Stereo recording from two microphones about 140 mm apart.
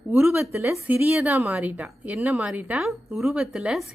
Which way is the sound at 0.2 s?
20° right (ahead or behind).